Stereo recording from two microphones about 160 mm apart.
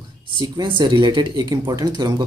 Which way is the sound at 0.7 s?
30° right (ahead or behind).